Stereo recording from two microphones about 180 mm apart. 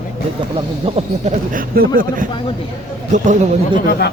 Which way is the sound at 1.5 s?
55° right (ahead or behind).